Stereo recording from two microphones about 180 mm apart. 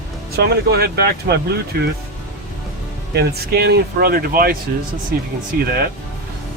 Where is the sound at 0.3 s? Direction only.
65° right (ahead or behind).